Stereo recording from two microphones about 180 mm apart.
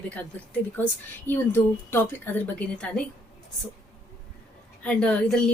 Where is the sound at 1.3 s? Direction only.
10° left (ahead or behind).